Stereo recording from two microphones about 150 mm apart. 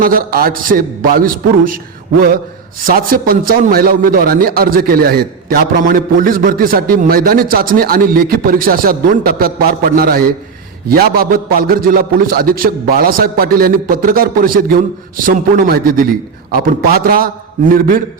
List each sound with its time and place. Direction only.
0.0 s a man's voice: 70° right (ahead or behind)
2.8 s a man's voice: 70° right (ahead or behind)